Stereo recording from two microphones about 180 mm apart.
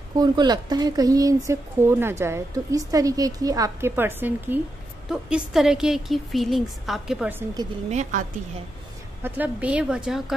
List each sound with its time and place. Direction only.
0.2 s a woman's voice: 25° right (ahead or behind)
7.9 s speech: 40° right (ahead or behind)
9.2 s a woman's voice: 10° right (ahead or behind)